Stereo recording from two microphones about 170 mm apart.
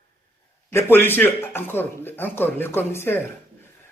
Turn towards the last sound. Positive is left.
turn(degrees=15)  # may be behind; listen again after turning